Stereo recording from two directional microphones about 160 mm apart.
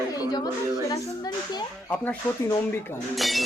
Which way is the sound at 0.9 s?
25° left (ahead or behind).